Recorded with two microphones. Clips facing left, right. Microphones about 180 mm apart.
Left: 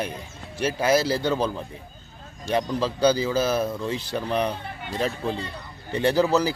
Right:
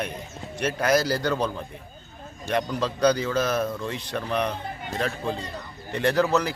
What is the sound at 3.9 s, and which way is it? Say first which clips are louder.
Speech: left 4 dB; 30° left (ahead or behind).